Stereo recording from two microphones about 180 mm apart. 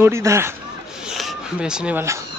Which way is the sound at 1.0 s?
Centre (ahead or behind).